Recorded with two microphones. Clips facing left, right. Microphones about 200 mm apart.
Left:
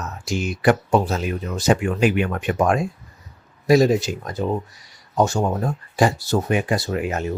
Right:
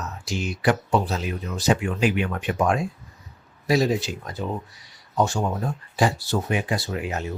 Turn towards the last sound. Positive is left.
turn(degrees=50)  # may be behind; listen again after turning